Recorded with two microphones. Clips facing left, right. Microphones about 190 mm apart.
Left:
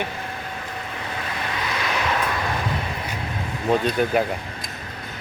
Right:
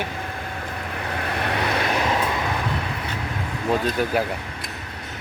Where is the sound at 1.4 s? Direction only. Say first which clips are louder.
Right 5 dB; 60° right (ahead or behind).